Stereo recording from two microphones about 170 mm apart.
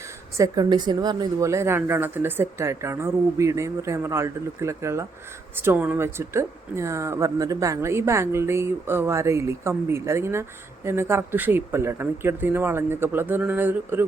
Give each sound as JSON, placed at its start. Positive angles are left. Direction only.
{"t": 0.3, "sound": "speech", "side_deg": -20}